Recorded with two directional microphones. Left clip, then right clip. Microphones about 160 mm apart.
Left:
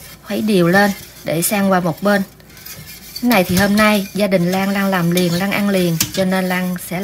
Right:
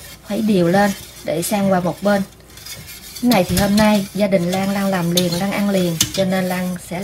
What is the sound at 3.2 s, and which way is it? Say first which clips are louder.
A woman's voice: left 2 dB; 75° left (ahead or behind).